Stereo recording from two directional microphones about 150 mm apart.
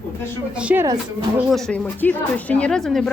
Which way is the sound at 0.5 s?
10° right (ahead or behind).